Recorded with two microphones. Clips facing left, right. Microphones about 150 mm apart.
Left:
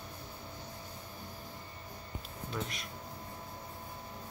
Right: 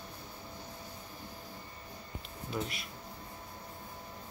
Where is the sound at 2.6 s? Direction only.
15° right (ahead or behind).